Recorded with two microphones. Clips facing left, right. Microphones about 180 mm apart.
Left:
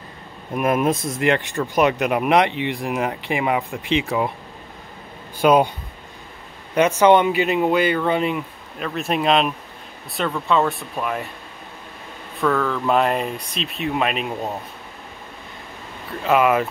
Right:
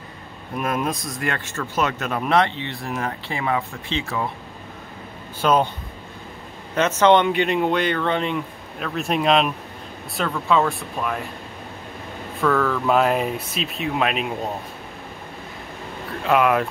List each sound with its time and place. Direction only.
0.6 s speech: 20° left (ahead or behind)
5.4 s speech: 15° left (ahead or behind)
6.7 s speech: 10° left (ahead or behind)
12.4 s speech: centre (ahead or behind)
16.3 s speech: centre (ahead or behind)